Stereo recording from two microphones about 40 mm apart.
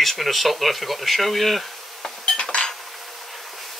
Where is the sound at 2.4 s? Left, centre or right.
Centre.